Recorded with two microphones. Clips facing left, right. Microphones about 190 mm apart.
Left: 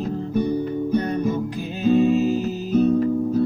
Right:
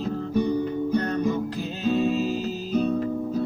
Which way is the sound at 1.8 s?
15° left (ahead or behind).